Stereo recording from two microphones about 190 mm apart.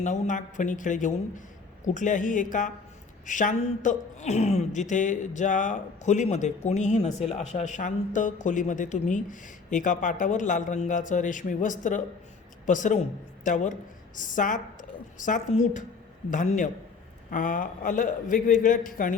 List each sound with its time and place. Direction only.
0.0 s a woman's voice: 40° left (ahead or behind)